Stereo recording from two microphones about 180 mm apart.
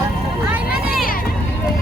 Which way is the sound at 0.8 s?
55° left (ahead or behind).